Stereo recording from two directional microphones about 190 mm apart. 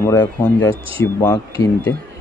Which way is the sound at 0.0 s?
10° left (ahead or behind).